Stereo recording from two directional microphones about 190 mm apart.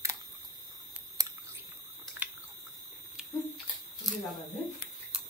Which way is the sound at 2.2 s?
10° right (ahead or behind).